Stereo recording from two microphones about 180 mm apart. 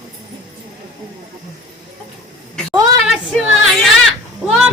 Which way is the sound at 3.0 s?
Centre (ahead or behind).